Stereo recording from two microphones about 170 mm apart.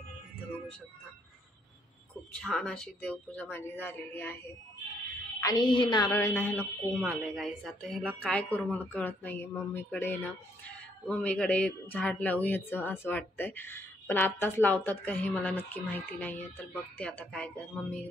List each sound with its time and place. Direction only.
2.4 s speech: 5° left (ahead or behind)
5.4 s speech: 25° left (ahead or behind)
7.0 s a woman's voice: centre (ahead or behind)